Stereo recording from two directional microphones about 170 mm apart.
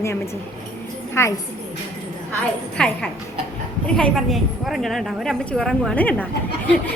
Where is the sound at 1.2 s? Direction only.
15° left (ahead or behind).